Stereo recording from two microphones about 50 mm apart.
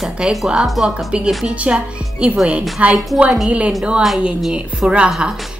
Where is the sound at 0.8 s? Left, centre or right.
Centre.